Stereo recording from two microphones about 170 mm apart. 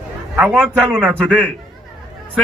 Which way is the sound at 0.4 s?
5° right (ahead or behind).